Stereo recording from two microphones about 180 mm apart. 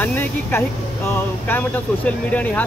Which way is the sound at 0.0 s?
10° left (ahead or behind).